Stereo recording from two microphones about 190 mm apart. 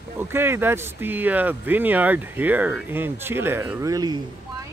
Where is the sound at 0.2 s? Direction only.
10° right (ahead or behind).